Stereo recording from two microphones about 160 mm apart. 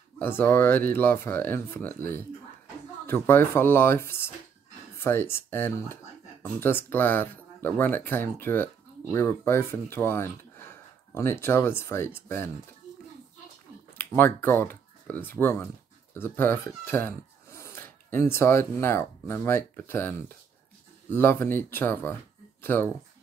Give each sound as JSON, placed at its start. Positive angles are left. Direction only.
{"t": 0.2, "sound": "speech", "side_deg": 15}
{"t": 14.1, "sound": "speech", "side_deg": 15}